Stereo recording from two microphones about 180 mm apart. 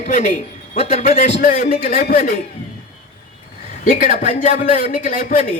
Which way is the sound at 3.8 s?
50° left (ahead or behind).